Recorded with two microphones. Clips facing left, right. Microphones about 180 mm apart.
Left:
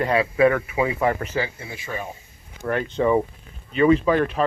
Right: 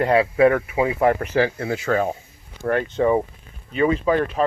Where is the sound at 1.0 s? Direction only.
60° right (ahead or behind); by 2.0 s 85° right.